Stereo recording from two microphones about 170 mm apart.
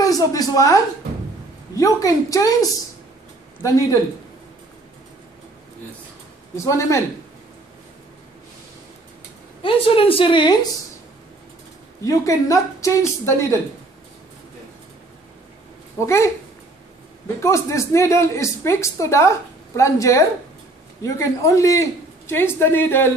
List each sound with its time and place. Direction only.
0.0 s a woman's voice: 20° left (ahead or behind)
1.8 s a woman's voice: 20° left (ahead or behind)
6.5 s speech: 15° left (ahead or behind)
9.6 s a woman's voice: 30° left (ahead or behind)
12.0 s speech: 20° left (ahead or behind)
17.4 s speech: 15° left (ahead or behind)